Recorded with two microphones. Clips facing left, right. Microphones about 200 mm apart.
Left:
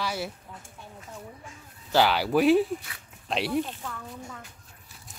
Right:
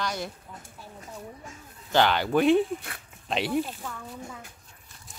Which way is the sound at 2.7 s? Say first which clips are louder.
Right 3 dB; 50° right (ahead or behind).